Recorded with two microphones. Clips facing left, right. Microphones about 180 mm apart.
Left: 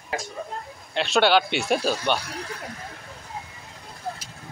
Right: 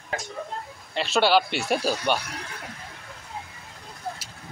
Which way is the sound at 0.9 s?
5° right (ahead or behind).